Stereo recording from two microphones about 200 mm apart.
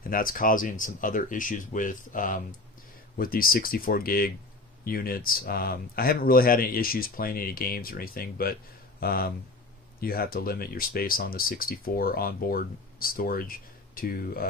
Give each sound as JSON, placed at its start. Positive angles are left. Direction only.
{"t": 0.0, "sound": "speech", "side_deg": 45}